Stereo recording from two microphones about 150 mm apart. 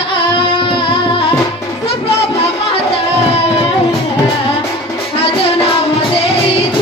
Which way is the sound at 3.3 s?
40° left (ahead or behind).